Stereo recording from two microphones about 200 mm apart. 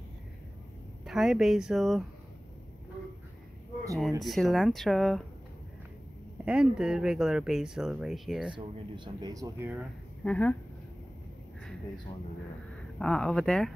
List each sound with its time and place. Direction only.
1.0 s speech: centre (ahead or behind)
4.2 s speech: centre (ahead or behind)
6.4 s speech: 5° right (ahead or behind)
8.5 s speech: 25° right (ahead or behind)
10.2 s speech: 5° left (ahead or behind)
13.0 s speech: 5° left (ahead or behind)